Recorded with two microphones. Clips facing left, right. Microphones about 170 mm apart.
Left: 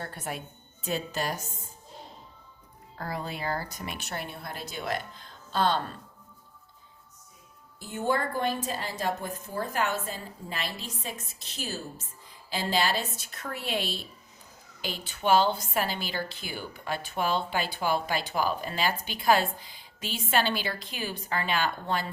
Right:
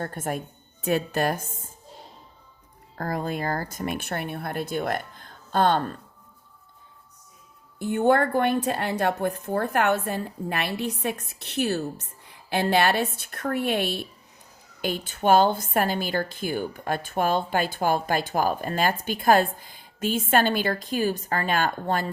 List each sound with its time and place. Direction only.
0.0 s a woman's voice: 45° right (ahead or behind)
3.0 s a woman's voice: 45° right (ahead or behind)
7.8 s a woman's voice: 60° right (ahead or behind)